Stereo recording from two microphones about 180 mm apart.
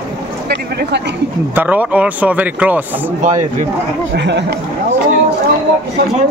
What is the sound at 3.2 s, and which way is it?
Speech, 40° right (ahead or behind).